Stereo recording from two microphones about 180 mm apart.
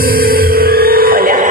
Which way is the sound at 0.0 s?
55° right (ahead or behind).